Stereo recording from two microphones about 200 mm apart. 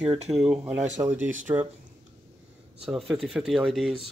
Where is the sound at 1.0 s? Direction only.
20° right (ahead or behind).